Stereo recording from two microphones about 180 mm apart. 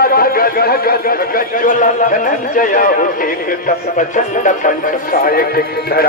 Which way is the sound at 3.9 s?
45° left (ahead or behind).